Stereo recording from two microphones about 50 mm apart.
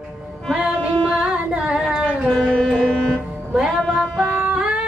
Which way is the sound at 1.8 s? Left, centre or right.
Centre.